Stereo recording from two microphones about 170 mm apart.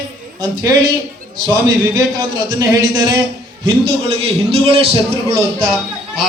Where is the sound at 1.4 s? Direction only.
25° right (ahead or behind).